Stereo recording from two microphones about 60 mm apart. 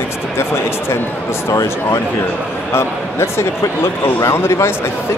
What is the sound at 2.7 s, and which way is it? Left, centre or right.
Speech, left.